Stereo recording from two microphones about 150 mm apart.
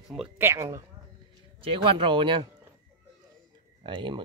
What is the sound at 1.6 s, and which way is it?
Speech, 35° right (ahead or behind).